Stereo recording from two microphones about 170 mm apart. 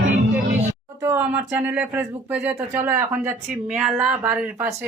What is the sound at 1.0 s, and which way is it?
Speech, 15° right (ahead or behind).